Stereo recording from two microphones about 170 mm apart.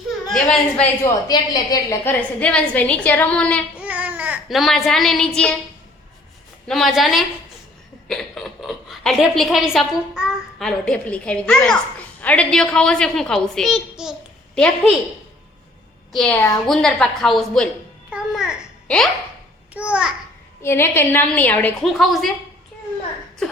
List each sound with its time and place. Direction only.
0.3 s a woman's voice: 5° left (ahead or behind)
1.0 s a woman's voice: 20° left (ahead or behind)
2.4 s a woman's voice: 5° left (ahead or behind)
3.8 s speech: 10° right (ahead or behind)
6.7 s a woman's voice: centre (ahead or behind)
16.1 s a woman's voice: 5° left (ahead or behind)
18.1 s babbling: 5° right (ahead or behind)
19.7 s a child's voice: 5° right (ahead or behind)
20.6 s a woman's voice: 15° left (ahead or behind)